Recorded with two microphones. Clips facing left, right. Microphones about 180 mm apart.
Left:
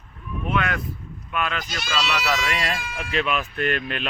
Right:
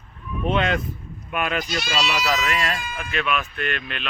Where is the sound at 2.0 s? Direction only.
15° right (ahead or behind).